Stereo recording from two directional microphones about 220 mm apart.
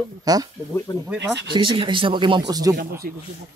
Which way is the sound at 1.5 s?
20° right (ahead or behind).